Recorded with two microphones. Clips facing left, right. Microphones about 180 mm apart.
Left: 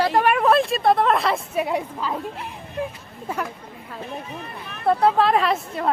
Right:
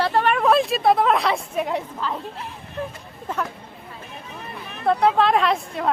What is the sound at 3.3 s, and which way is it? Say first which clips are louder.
Speech: right 1 dB; 10° left (ahead or behind).